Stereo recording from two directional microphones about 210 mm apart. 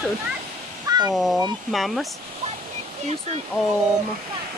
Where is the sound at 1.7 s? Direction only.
Centre (ahead or behind).